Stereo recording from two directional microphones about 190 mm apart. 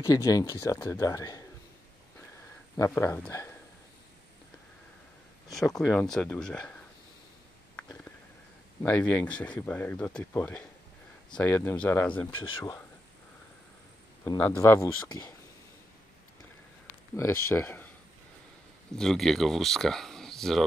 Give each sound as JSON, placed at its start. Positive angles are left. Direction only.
{"t": 0.0, "sound": "speech", "side_deg": 20}
{"t": 2.8, "sound": "speech", "side_deg": 15}
{"t": 5.9, "sound": "speech", "side_deg": 5}
{"t": 7.7, "sound": "a sound", "side_deg": 10}
{"t": 8.8, "sound": "speech", "side_deg": 10}
{"t": 12.3, "sound": "speech", "side_deg": 25}
{"t": 14.2, "sound": "speech", "side_deg": 15}
{"t": 17.1, "sound": "speech", "side_deg": 15}
{"t": 18.9, "sound": "speech", "side_deg": 0}